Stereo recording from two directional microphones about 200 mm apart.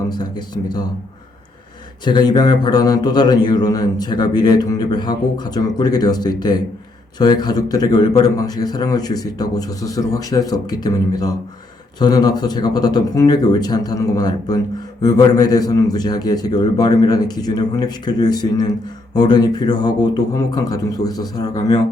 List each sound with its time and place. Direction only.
0.2 s a man's voice: 20° left (ahead or behind)
2.0 s a man's voice: 20° left (ahead or behind)